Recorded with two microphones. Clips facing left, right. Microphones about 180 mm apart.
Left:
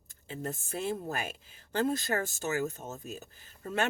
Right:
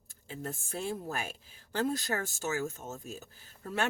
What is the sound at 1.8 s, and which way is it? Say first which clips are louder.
Speech: left 2 dB; 20° left (ahead or behind).